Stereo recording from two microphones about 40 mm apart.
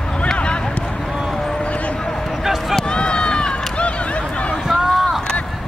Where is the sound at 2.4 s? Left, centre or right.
Centre.